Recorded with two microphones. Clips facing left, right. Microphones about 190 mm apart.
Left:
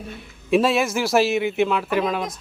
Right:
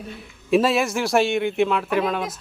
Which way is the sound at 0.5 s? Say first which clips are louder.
Even; centre (ahead or behind).